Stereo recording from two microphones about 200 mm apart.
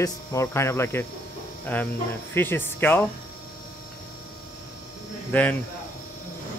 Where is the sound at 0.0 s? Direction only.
15° left (ahead or behind).